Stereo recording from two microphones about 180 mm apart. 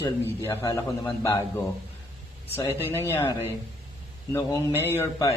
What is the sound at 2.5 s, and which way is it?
A man's voice, 15° left (ahead or behind).